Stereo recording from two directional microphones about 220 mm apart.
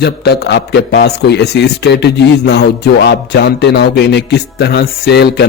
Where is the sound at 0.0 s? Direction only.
50° left (ahead or behind).